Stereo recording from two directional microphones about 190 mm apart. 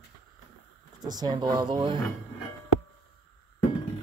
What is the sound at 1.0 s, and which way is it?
Speech, 20° right (ahead or behind).